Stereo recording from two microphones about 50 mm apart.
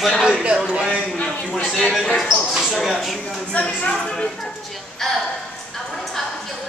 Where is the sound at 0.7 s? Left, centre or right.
Centre.